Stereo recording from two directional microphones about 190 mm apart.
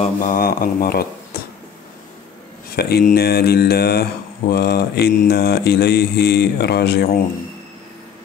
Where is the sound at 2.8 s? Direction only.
55° left (ahead or behind).